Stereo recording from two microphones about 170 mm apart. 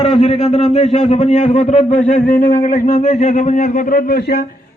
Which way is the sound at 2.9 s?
40° left (ahead or behind).